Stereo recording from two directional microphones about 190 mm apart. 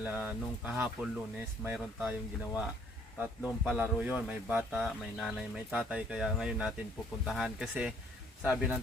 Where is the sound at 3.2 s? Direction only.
5° right (ahead or behind).